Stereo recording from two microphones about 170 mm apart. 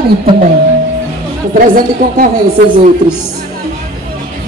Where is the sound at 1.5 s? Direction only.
55° right (ahead or behind).